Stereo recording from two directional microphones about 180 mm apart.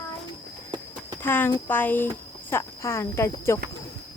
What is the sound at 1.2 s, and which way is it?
Speech, 10° left (ahead or behind).